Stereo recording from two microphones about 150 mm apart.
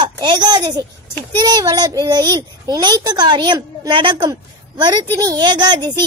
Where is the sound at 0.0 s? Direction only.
30° right (ahead or behind).